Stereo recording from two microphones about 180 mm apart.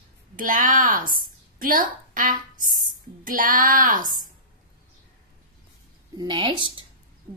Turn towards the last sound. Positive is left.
turn(degrees=-25)  # may be behind; listen again after turning